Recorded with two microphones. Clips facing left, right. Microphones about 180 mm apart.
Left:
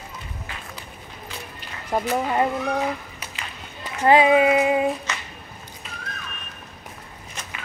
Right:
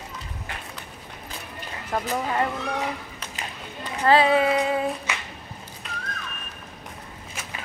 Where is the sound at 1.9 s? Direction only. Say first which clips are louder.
Left 4 dB; 20° left (ahead or behind).